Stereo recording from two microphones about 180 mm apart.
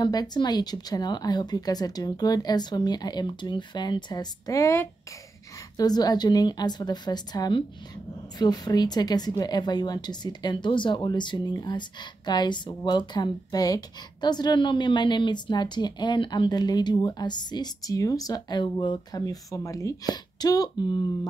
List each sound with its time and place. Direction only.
0.0 s a woman's voice: 20° left (ahead or behind)